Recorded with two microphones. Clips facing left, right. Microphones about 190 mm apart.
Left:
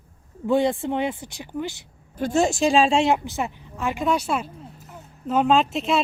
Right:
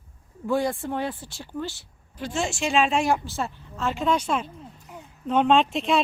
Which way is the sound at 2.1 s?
45° left (ahead or behind).